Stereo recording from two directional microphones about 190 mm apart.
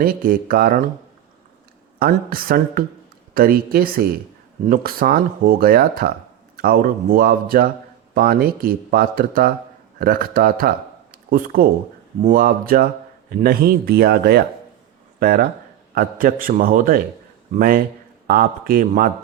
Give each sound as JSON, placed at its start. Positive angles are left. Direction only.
{"t": 0.0, "sound": "speech", "side_deg": -50}
{"t": 2.0, "sound": "speech", "side_deg": -50}